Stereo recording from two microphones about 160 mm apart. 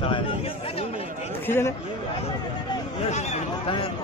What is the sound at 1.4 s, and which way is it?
Speech, 15° left (ahead or behind).